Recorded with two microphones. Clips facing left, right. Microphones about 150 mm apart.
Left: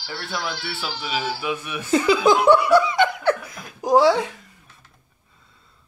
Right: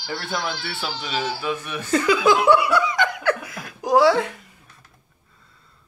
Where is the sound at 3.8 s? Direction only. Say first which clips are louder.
Even; centre (ahead or behind).